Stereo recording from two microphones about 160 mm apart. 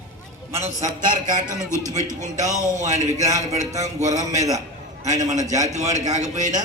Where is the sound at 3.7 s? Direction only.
45° right (ahead or behind).